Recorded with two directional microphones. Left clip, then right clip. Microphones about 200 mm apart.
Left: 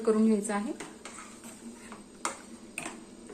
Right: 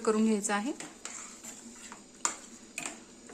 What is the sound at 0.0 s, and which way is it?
Speech, 25° right (ahead or behind).